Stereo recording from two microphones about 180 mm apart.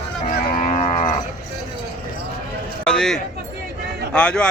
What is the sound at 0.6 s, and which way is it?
Moo, 35° left (ahead or behind).